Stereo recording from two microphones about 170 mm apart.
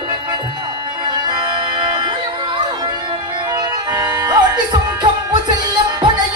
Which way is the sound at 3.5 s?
25° right (ahead or behind).